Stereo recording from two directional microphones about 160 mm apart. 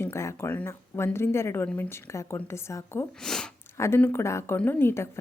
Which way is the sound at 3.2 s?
5° left (ahead or behind).